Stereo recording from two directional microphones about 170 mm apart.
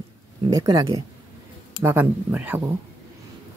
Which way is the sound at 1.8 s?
10° right (ahead or behind).